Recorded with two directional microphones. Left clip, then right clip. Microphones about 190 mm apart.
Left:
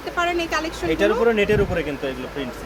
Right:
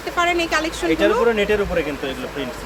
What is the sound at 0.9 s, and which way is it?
Speech, 25° left (ahead or behind).